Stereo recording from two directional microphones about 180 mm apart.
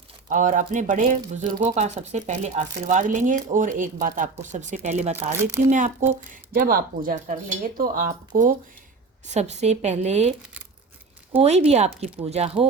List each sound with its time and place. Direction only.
0.3 s speech: 45° right (ahead or behind)
5.1 s speech: 10° right (ahead or behind)
6.5 s speech: 55° right (ahead or behind); by 12.5 s 35° right (ahead or behind)